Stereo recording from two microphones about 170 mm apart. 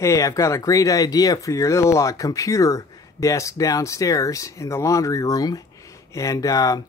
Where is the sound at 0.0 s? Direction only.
20° left (ahead or behind).